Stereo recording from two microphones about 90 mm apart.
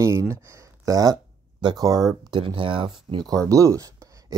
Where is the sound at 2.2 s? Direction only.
65° right (ahead or behind).